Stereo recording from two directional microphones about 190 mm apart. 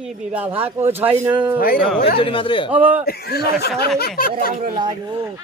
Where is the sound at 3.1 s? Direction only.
55° left (ahead or behind).